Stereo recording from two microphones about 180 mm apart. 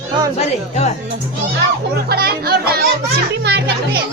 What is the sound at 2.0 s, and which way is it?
Music, 60° right (ahead or behind).